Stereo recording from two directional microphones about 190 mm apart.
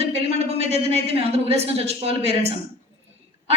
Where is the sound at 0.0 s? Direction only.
35° right (ahead or behind).